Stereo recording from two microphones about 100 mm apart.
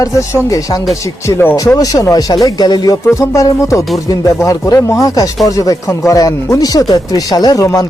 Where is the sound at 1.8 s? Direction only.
35° left (ahead or behind).